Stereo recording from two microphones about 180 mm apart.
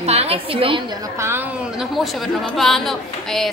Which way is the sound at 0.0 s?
35° right (ahead or behind).